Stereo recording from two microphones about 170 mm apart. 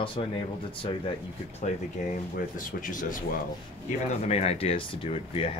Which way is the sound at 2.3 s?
50° left (ahead or behind).